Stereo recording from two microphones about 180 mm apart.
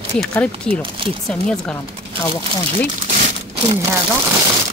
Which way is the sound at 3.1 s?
40° right (ahead or behind).